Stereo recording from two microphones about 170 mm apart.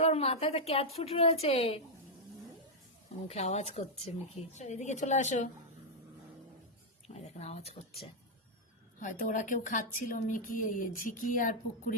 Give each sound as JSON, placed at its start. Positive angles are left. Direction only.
{"t": 0.0, "sound": "a woman's voice", "side_deg": 35}
{"t": 3.2, "sound": "a woman's voice", "side_deg": 40}
{"t": 7.1, "sound": "speech", "side_deg": 40}
{"t": 9.0, "sound": "a woman's voice", "side_deg": 50}